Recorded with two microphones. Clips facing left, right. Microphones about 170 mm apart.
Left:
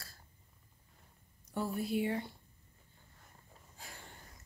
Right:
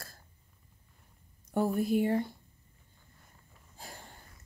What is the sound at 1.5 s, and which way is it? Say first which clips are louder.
Speech: right 7 dB; 45° right (ahead or behind).